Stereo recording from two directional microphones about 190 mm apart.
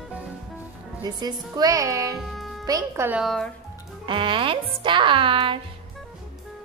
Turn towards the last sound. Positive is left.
turn(degrees=-25)  # may be behind; listen again after turning